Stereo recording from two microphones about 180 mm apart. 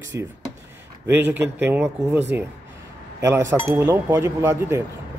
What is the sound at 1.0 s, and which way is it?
Speech, 10° right (ahead or behind).